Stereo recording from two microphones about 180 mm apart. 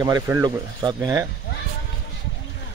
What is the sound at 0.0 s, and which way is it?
Speech, 20° right (ahead or behind).